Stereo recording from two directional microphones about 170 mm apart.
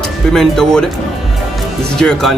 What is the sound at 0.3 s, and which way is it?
Speech, 5° left (ahead or behind).